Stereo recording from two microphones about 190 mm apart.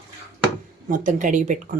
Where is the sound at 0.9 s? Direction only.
45° right (ahead or behind).